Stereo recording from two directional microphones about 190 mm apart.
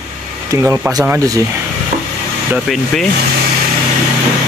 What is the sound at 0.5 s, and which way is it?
Speech, 15° right (ahead or behind).